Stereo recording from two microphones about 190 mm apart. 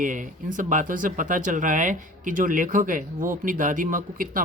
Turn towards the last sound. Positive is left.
turn(degrees=-45)  # may be behind; listen again after turning